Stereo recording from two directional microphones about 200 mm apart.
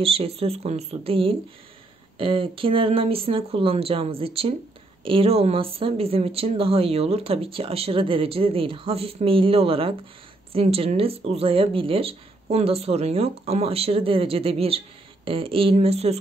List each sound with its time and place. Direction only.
0.0 s speech: 30° right (ahead or behind)